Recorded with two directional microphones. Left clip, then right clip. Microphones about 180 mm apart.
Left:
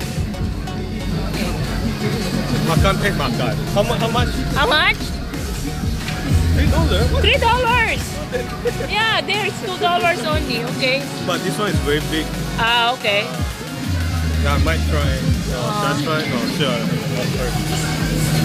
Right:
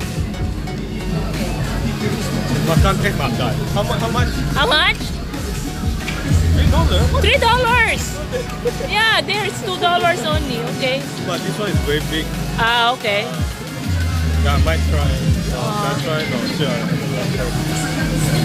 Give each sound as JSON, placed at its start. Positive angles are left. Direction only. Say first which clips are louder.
{"t": 2.8, "sound": "speech", "louder": "even", "side_deg": 45}
{"t": 4.6, "sound": "speech", "louder": "right 1 dB", "side_deg": 5}
{"t": 7.2, "sound": "speech", "louder": "right 1 dB", "side_deg": -5}
{"t": 9.8, "sound": "speech", "louder": "right 2 dB", "side_deg": -15}
{"t": 10.0, "sound": "speech", "louder": "right 1 dB", "side_deg": 0}
{"t": 11.2, "sound": "speech", "louder": "left 2 dB", "side_deg": 45}
{"t": 12.5, "sound": "speech", "louder": "right 1 dB", "side_deg": -5}
{"t": 14.4, "sound": "speech", "louder": "even", "side_deg": 45}